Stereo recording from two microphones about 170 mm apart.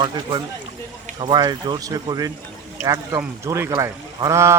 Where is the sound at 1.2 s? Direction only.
25° right (ahead or behind).